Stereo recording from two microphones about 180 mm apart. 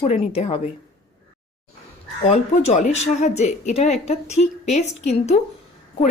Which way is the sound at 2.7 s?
45° left (ahead or behind).